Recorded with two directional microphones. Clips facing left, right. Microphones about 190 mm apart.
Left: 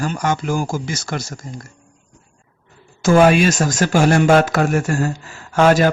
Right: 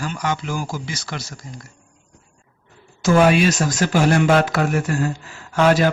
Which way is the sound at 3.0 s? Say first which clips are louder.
Left 3 dB; 50° left (ahead or behind).